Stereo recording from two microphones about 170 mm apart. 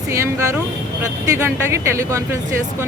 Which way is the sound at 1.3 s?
15° right (ahead or behind).